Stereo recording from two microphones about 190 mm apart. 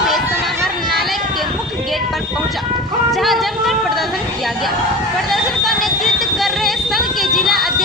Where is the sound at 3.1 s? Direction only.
Centre (ahead or behind).